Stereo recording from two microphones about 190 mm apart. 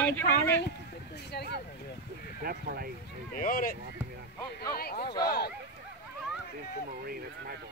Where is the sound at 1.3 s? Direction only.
60° left (ahead or behind).